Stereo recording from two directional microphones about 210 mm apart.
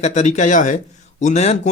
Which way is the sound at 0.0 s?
35° left (ahead or behind).